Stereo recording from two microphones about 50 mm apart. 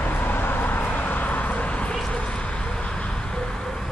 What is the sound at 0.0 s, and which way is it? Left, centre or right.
Vehicle, left.